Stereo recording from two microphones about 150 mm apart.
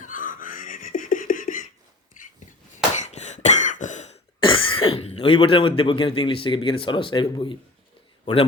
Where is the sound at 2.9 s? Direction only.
50° left (ahead or behind).